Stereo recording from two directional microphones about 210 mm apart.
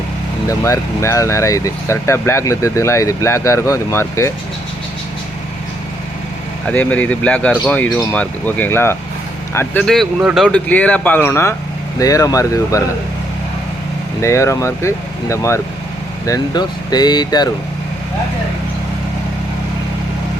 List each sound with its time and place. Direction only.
0.4 s speech: 15° left (ahead or behind)
6.7 s speech: 5° left (ahead or behind)
14.2 s speech: 15° left (ahead or behind)